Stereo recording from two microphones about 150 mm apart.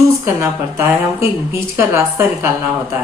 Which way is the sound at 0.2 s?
15° right (ahead or behind).